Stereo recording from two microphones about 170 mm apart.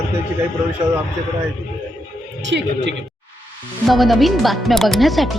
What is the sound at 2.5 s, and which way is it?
Speech, 90° right.